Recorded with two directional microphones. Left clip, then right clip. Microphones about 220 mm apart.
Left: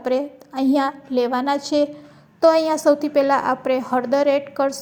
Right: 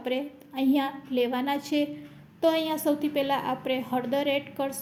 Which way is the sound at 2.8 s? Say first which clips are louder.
Left 10 dB; 10° left (ahead or behind).